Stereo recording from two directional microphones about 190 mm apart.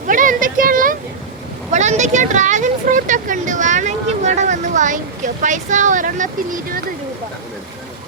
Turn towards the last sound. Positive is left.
turn(degrees=-45)  # may be behind; listen again after turning